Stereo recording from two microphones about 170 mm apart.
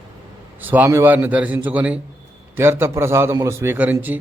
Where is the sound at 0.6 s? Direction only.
10° right (ahead or behind).